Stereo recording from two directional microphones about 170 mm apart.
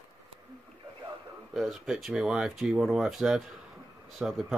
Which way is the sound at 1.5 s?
Centre (ahead or behind).